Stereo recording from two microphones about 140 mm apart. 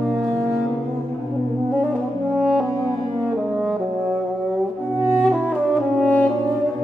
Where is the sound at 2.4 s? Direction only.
Centre (ahead or behind).